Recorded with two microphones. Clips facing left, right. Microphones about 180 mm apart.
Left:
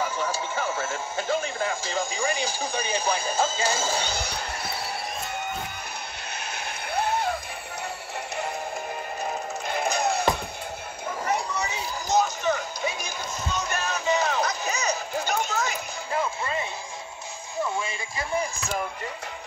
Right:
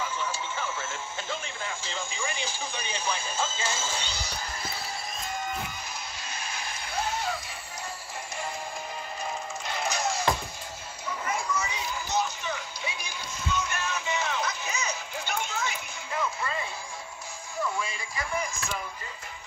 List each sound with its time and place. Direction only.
0.0 s radio: 40° left (ahead or behind)
4.2 s music: 65° left (ahead or behind)
6.5 s music: 60° left (ahead or behind)
9.2 s music: 55° left (ahead or behind)
11.5 s music: 35° left (ahead or behind)
17.7 s music: 25° left (ahead or behind)